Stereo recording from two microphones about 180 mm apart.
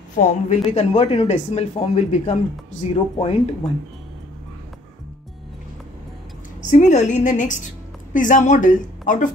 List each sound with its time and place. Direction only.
0.1 s speech: 45° left (ahead or behind)
6.6 s speech: 45° left (ahead or behind)